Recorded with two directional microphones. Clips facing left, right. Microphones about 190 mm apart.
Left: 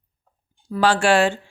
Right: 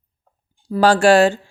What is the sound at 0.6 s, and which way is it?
Speech, 35° right (ahead or behind).